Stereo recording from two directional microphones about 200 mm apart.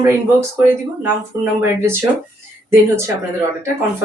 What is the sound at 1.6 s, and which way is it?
Speech, 10° right (ahead or behind).